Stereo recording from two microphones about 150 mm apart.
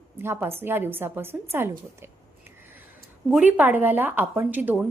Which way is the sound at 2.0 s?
15° right (ahead or behind).